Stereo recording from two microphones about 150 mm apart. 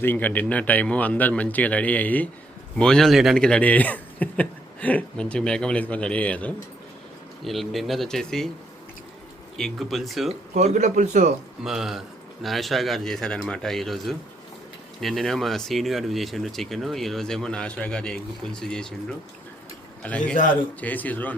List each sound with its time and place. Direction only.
0.0 s a man's voice: 10° left (ahead or behind)
9.6 s speech: centre (ahead or behind)
10.6 s a man's voice: 50° right (ahead or behind)
11.6 s speech: centre (ahead or behind)
20.0 s a man's voice: 10° left (ahead or behind)